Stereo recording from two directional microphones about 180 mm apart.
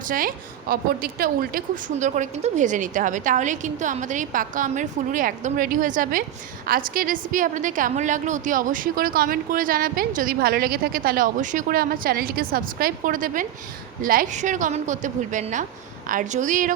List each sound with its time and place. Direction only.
0.1 s a woman's voice: 50° right (ahead or behind)